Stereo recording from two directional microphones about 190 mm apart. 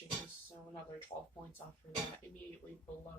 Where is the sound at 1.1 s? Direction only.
30° left (ahead or behind).